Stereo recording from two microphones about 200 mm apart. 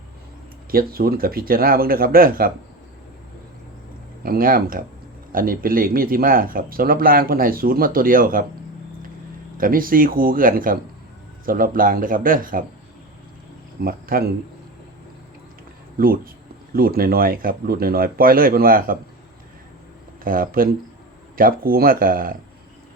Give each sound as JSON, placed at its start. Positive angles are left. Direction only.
{"t": 0.7, "sound": "speech", "side_deg": -50}
{"t": 4.2, "sound": "speech", "side_deg": -45}
{"t": 9.6, "sound": "speech", "side_deg": -45}
{"t": 13.8, "sound": "speech", "side_deg": -50}
{"t": 16.0, "sound": "speech", "side_deg": -45}
{"t": 20.2, "sound": "speech", "side_deg": -45}